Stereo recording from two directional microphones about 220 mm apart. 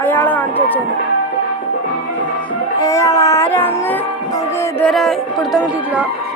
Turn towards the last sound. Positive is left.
turn(degrees=-5)  # may be behind; listen again after turning